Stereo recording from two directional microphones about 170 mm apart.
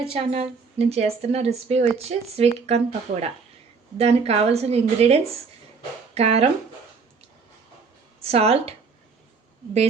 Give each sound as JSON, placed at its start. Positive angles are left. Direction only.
{"t": 0.1, "sound": "a woman's voice", "side_deg": -35}
{"t": 8.2, "sound": "a woman's voice", "side_deg": -35}